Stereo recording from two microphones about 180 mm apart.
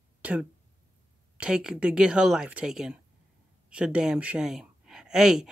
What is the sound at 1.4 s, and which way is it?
Speech, 5° right (ahead or behind).